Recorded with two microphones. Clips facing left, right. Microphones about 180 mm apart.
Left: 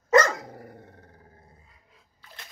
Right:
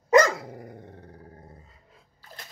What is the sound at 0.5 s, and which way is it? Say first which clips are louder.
Dog: right 2 dB; 15° right (ahead or behind).